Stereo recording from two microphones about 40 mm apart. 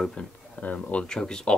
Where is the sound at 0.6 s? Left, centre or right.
Left.